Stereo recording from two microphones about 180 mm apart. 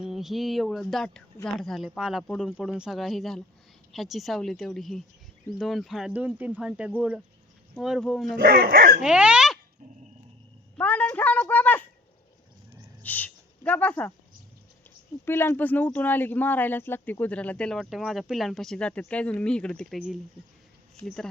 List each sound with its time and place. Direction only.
0.0 s speech: centre (ahead or behind)
8.4 s speech: 55° right (ahead or behind)
9.0 s speech: 5° right (ahead or behind)
10.8 s a woman's voice: 10° left (ahead or behind)
13.0 s speech: 10° left (ahead or behind)
15.2 s speech: 10° left (ahead or behind)